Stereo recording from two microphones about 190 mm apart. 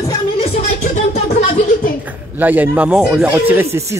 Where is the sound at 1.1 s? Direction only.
35° left (ahead or behind).